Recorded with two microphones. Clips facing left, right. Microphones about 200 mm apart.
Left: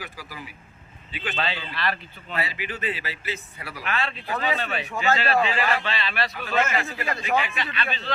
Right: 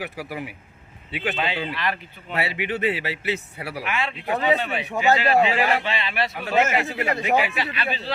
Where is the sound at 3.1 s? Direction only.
70° right (ahead or behind).